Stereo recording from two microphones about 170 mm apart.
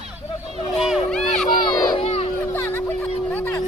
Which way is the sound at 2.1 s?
35° left (ahead or behind).